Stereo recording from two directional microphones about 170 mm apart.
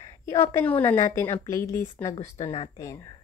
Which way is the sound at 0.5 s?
10° left (ahead or behind).